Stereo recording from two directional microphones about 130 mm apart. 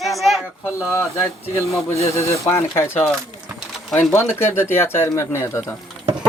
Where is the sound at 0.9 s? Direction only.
20° left (ahead or behind).